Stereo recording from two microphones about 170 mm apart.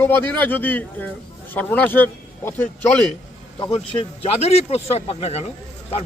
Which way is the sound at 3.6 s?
30° left (ahead or behind).